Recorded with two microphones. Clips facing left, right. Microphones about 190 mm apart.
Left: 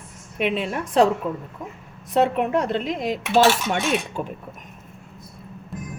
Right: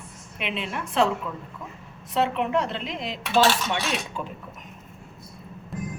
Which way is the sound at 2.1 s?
45° left (ahead or behind).